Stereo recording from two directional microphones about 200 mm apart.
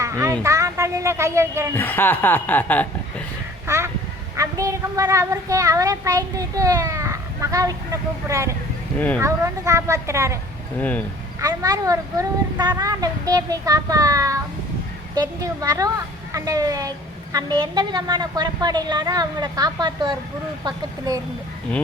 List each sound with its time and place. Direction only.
0.0 s vehicle: 15° right (ahead or behind)
0.4 s speech: 15° right (ahead or behind)
1.7 s a woman's voice: 10° left (ahead or behind)
3.7 s quack: 15° right (ahead or behind)
4.4 s a woman's voice: 15° right (ahead or behind)
9.0 s a woman's voice: 10° left (ahead or behind)
9.2 s a woman's voice: 15° right (ahead or behind)
10.8 s a woman's voice: 10° left (ahead or behind)
11.3 s a woman's voice: 15° right (ahead or behind)